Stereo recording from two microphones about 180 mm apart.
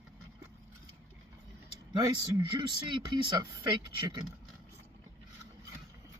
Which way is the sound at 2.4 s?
25° right (ahead or behind).